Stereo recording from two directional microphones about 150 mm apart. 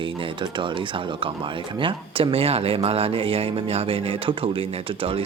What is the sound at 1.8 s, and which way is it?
Speech, 35° right (ahead or behind).